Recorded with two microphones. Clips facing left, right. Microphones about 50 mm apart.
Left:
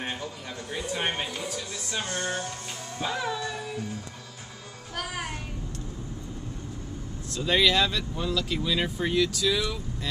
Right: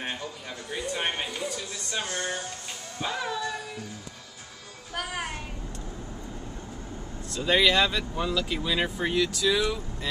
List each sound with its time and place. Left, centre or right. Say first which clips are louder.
0.7 s speech: even; centre
2.0 s music: left 2 dB; centre
3.0 s speech: even; centre
4.9 s speech: right 1 dB; centre
7.2 s speech: right 1 dB; centre